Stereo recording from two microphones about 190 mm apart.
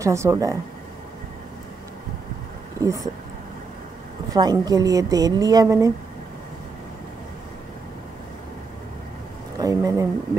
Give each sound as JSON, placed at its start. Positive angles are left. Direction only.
{"t": 0.0, "sound": "speech", "side_deg": -15}
{"t": 2.8, "sound": "speech", "side_deg": -15}
{"t": 4.3, "sound": "a woman's voice", "side_deg": -20}
{"t": 9.6, "sound": "a sound", "side_deg": -15}